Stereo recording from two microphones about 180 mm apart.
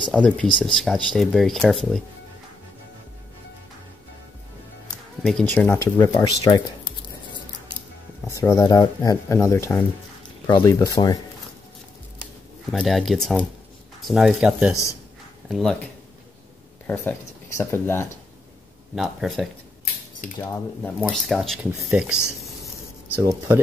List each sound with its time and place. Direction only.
0.1 s speech: 5° left (ahead or behind)
5.2 s speech: 5° left (ahead or behind)
8.4 s speech: 15° left (ahead or behind)
12.7 s speech: centre (ahead or behind)
16.8 s speech: 10° left (ahead or behind)
18.9 s speech: centre (ahead or behind)
20.3 s speech: 10° left (ahead or behind); by 23.6 s 15° right (ahead or behind)